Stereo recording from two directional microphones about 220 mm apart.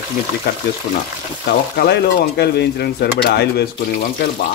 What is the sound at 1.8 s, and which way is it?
Speech, 45° left (ahead or behind).